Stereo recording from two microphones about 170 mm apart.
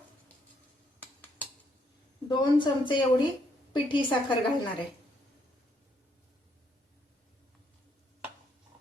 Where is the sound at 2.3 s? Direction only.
30° left (ahead or behind).